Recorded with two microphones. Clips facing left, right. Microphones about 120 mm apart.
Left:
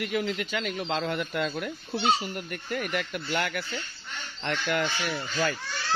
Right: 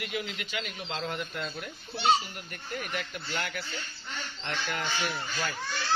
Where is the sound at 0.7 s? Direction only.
70° left (ahead or behind).